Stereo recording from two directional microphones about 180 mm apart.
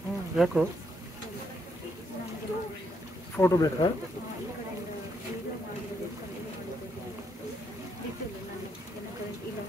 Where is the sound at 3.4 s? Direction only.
20° left (ahead or behind).